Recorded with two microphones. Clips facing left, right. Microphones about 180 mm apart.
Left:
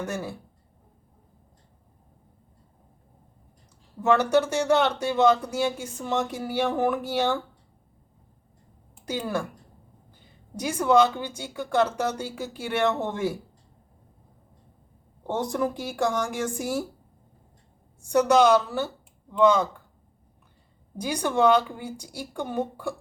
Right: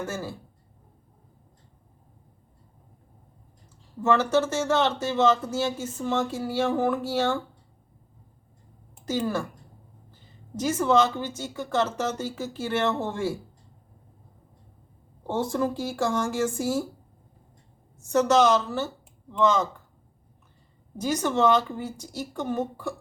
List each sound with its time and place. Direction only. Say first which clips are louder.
0.0 s speech: left 1 dB; 15° left (ahead or behind)
4.0 s speech: left 1 dB; 15° left (ahead or behind)
9.0 s speech: right 2 dB; 15° left (ahead or behind)
10.6 s speech: left 1 dB; 15° left (ahead or behind)
15.3 s speech: even; 15° left (ahead or behind)
18.0 s speech: left 1 dB; 15° left (ahead or behind)
21.0 s speech: left 1 dB; 10° left (ahead or behind)